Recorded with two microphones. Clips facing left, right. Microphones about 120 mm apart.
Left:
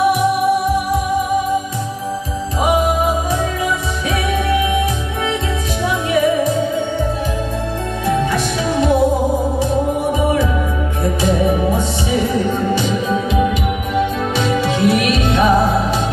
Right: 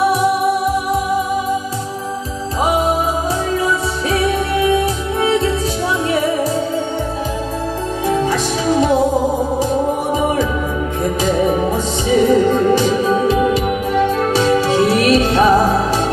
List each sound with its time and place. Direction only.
2.6 s music: 30° right (ahead or behind)
8.1 s music: 35° right (ahead or behind)
12.7 s music: 40° right (ahead or behind)